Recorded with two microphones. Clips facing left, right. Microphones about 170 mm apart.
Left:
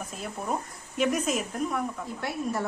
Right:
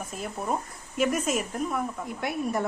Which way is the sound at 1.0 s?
5° right (ahead or behind).